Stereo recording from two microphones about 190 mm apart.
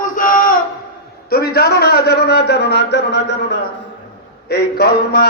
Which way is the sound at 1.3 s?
55° left (ahead or behind).